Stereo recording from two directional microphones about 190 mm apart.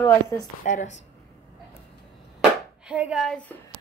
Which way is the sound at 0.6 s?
40° left (ahead or behind).